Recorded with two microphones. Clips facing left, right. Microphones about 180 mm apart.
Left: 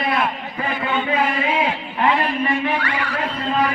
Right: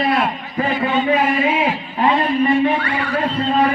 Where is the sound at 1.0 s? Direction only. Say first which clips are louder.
Right 4 dB; 25° right (ahead or behind).